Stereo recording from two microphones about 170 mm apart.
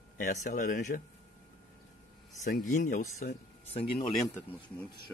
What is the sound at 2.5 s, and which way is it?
Speech, 50° left (ahead or behind).